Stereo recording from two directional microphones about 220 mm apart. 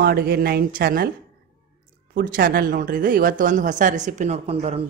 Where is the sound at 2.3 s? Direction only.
40° right (ahead or behind).